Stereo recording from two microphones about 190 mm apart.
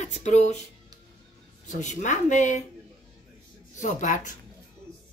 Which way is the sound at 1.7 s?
40° left (ahead or behind).